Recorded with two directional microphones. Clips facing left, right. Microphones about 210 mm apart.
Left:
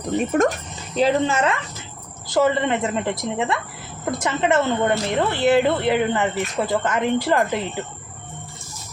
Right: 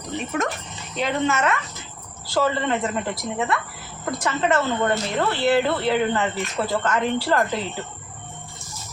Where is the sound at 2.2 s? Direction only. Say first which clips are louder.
Left 3 dB; 20° left (ahead or behind).